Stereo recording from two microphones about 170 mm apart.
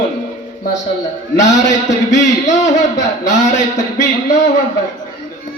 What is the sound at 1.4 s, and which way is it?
A man's voice, 45° left (ahead or behind).